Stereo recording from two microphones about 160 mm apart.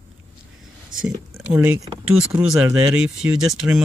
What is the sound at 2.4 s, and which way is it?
Speech, 5° right (ahead or behind).